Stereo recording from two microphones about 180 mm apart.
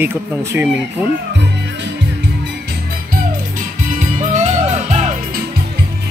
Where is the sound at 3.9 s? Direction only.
40° right (ahead or behind).